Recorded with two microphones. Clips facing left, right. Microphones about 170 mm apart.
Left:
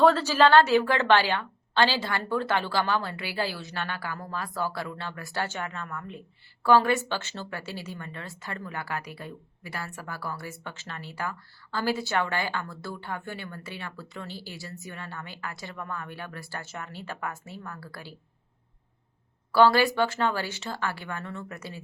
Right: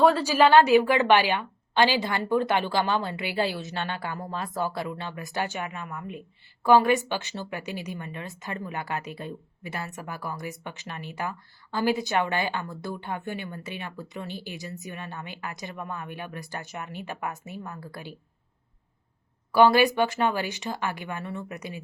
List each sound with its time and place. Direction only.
0.0 s a woman's voice: 10° right (ahead or behind)
19.5 s a woman's voice: 15° right (ahead or behind)